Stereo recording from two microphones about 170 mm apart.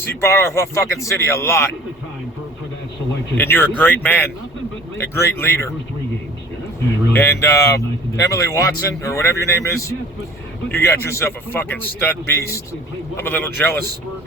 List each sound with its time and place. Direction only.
0.0 s speech: 15° left (ahead or behind)
3.3 s speech: 10° left (ahead or behind)
7.1 s speech: 15° left (ahead or behind)